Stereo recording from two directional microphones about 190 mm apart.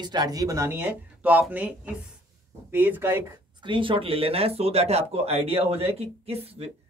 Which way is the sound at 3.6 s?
25° right (ahead or behind).